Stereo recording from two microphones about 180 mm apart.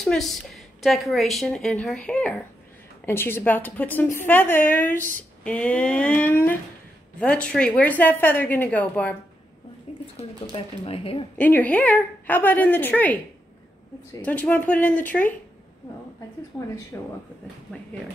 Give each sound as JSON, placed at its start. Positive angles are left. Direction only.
{"t": 0.0, "sound": "a woman's voice", "side_deg": 0}
{"t": 10.5, "sound": "speech", "side_deg": 30}
{"t": 11.3, "sound": "a woman's voice", "side_deg": 10}
{"t": 14.2, "sound": "a woman's voice", "side_deg": 10}
{"t": 16.5, "sound": "a woman's voice", "side_deg": 15}